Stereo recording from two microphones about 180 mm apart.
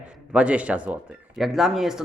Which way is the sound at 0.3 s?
5° right (ahead or behind).